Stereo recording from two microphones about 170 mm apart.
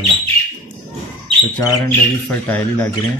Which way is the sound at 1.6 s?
15° left (ahead or behind).